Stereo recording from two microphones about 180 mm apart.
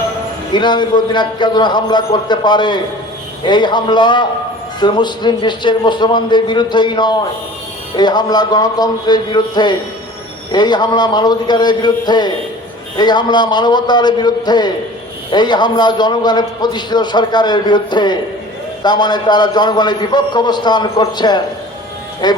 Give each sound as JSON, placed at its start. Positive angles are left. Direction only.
{"t": 0.5, "sound": "a man's voice", "side_deg": 25}